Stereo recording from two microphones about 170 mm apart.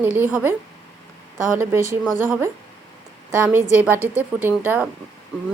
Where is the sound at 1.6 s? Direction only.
15° right (ahead or behind).